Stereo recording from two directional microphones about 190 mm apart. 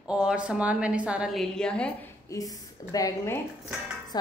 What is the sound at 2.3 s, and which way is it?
A woman's voice, 20° left (ahead or behind).